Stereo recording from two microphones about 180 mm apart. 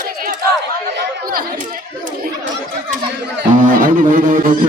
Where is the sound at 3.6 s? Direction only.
50° right (ahead or behind).